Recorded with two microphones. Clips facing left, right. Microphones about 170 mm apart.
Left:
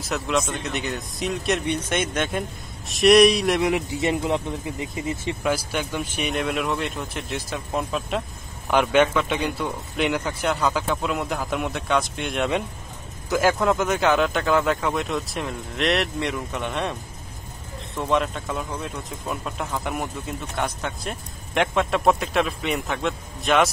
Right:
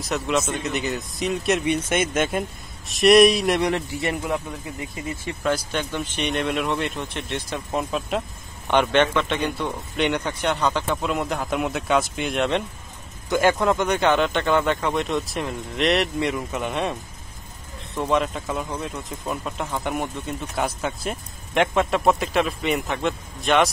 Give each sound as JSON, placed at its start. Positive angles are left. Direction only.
{"t": 0.0, "sound": "speech", "side_deg": 0}
{"t": 3.7, "sound": "speech", "side_deg": 20}
{"t": 5.4, "sound": "speech", "side_deg": 10}
{"t": 17.9, "sound": "speech", "side_deg": 0}